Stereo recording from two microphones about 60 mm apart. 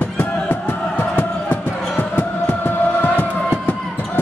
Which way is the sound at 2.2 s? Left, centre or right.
Left.